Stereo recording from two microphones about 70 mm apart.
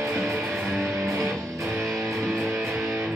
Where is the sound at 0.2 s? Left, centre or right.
Centre.